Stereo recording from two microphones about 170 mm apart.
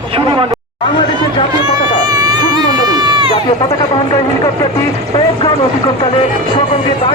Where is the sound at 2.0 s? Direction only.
25° right (ahead or behind).